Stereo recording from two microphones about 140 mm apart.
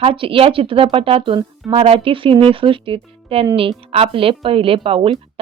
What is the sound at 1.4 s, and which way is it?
Speech, 25° right (ahead or behind).